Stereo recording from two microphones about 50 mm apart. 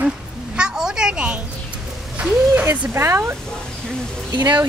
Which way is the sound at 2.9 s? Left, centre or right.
Right.